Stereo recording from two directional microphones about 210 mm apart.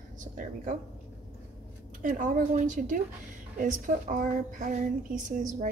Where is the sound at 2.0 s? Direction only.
40° right (ahead or behind).